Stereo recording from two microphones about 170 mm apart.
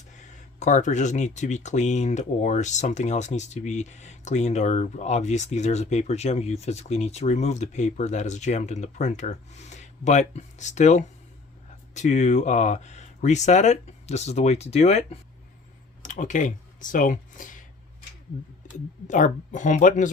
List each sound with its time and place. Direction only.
0.2 s speech: 45° left (ahead or behind)
19.0 s speech: 45° left (ahead or behind)